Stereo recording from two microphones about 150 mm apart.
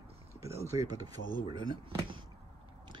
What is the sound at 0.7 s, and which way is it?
Speech, 25° right (ahead or behind).